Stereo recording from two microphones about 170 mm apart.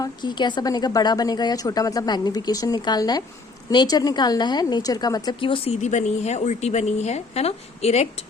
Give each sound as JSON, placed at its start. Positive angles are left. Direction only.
{"t": 0.0, "sound": "a woman's voice", "side_deg": 25}